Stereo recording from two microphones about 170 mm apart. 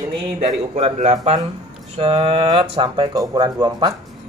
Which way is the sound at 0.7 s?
40° right (ahead or behind).